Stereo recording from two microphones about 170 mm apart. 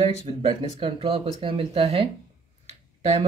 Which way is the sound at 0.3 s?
30° right (ahead or behind).